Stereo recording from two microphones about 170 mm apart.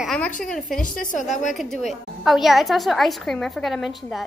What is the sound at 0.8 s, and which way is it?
Speech, 50° left (ahead or behind).